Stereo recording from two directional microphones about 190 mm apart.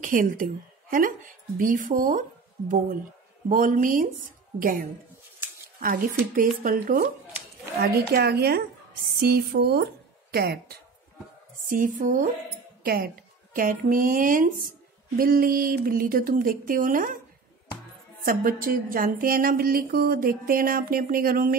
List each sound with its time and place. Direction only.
0.0 s speech: 45° right (ahead or behind)
3.4 s a woman's voice: 45° right (ahead or behind)
11.6 s speech: 45° right (ahead or behind)
18.2 s speech: 50° right (ahead or behind)